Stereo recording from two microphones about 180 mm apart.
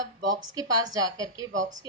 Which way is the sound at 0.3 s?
20° right (ahead or behind).